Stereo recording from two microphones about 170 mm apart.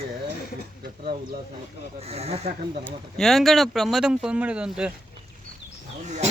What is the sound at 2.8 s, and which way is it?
Speech, centre (ahead or behind).